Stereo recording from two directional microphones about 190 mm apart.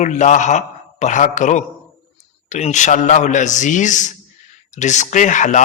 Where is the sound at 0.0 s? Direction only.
40° left (ahead or behind).